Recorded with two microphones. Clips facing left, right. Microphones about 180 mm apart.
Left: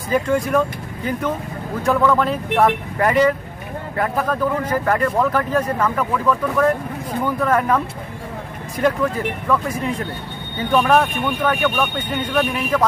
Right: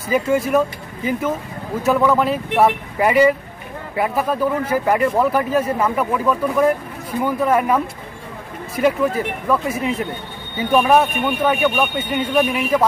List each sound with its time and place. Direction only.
0.1 s speech: 5° right (ahead or behind)